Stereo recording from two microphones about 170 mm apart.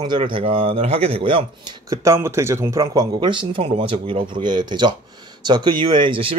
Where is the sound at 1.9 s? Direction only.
15° right (ahead or behind).